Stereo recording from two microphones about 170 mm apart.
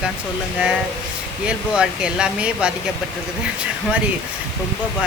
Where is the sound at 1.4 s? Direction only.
5° right (ahead or behind).